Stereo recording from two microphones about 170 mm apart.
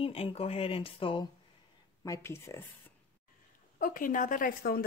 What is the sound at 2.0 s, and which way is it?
Speech, 15° left (ahead or behind).